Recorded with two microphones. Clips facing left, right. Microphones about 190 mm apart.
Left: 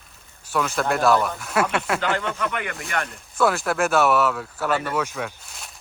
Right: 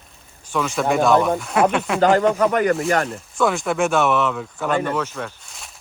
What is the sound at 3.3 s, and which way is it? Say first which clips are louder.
Speech: right 1 dB; centre (ahead or behind).